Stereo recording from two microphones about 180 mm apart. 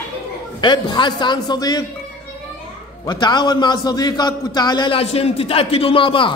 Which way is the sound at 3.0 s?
25° left (ahead or behind).